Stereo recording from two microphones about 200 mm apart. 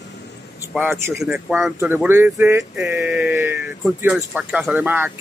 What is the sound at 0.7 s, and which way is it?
A man's voice, 10° right (ahead or behind).